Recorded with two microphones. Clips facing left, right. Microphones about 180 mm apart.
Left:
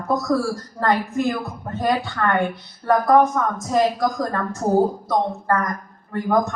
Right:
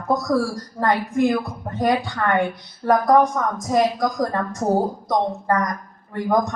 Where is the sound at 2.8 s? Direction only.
15° right (ahead or behind).